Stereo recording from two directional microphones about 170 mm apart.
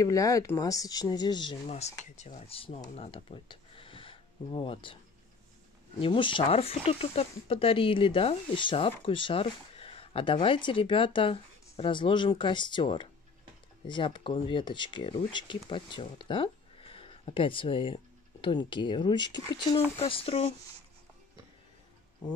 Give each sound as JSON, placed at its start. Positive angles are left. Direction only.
{"t": 0.0, "sound": "speech", "side_deg": 20}
{"t": 1.8, "sound": "speech", "side_deg": 40}
{"t": 5.9, "sound": "speech", "side_deg": 30}